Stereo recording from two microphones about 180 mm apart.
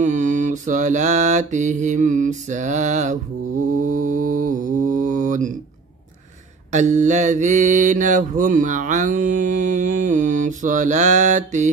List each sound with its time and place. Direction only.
0.0 s mantra: 45° right (ahead or behind)
6.7 s mantra: 40° right (ahead or behind)